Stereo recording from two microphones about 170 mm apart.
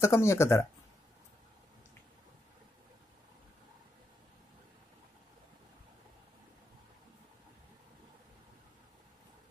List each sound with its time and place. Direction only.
0.0 s speech: 15° left (ahead or behind)